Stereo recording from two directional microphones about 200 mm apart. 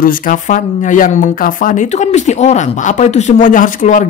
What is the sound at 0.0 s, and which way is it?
Speech, 45° left (ahead or behind).